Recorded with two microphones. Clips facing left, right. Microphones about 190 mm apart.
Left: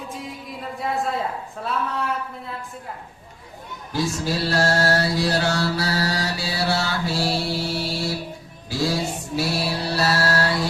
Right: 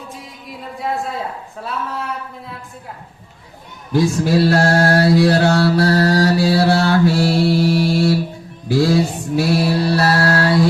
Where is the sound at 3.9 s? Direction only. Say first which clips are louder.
Right 9 dB; 60° right (ahead or behind).